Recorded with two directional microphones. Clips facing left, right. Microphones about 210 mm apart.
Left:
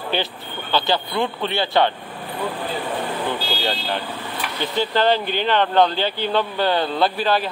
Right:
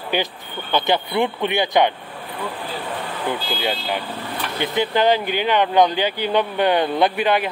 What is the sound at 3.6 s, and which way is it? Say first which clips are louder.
Speech: right 1 dB; 10° right (ahead or behind).